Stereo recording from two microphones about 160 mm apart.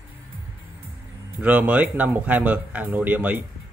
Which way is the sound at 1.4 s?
10° right (ahead or behind).